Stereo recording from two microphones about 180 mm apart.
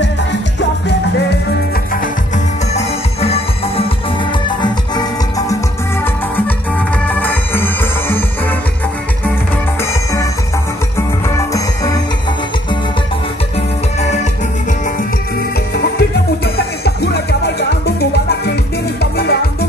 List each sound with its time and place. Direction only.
0.6 s music: 70° left (ahead or behind)
2.3 s music: 35° left (ahead or behind)
7.1 s music: 10° left (ahead or behind)
11.0 s music: 15° left (ahead or behind)
15.7 s music: 65° left (ahead or behind)